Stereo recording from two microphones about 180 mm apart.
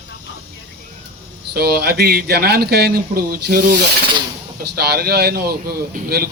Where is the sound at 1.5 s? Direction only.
65° right (ahead or behind).